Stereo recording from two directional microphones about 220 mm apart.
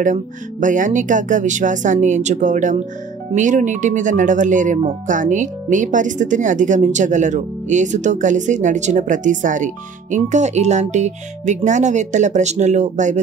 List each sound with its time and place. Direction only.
0.0 s speech: 35° right (ahead or behind)